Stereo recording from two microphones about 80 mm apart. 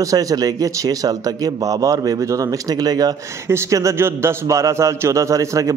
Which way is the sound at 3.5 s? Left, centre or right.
Right.